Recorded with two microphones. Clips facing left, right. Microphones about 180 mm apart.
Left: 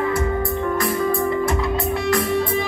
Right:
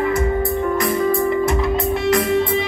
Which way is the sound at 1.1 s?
20° right (ahead or behind).